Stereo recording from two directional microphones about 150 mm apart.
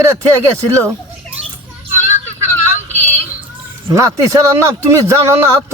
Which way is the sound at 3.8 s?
20° right (ahead or behind).